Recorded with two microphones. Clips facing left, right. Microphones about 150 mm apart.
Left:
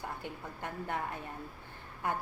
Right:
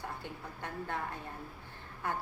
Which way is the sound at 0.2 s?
15° left (ahead or behind).